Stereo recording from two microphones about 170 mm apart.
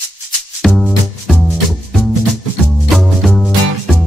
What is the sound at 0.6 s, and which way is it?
Music, centre (ahead or behind).